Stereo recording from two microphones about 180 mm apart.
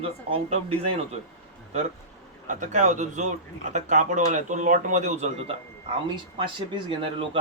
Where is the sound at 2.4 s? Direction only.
40° right (ahead or behind).